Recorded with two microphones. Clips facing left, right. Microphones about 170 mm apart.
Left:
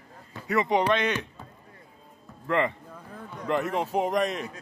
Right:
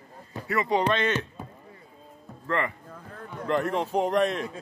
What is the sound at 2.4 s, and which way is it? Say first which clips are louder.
Speech: left 3 dB; 15° left (ahead or behind).